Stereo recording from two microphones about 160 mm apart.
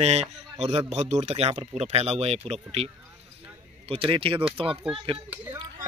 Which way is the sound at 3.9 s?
35° right (ahead or behind).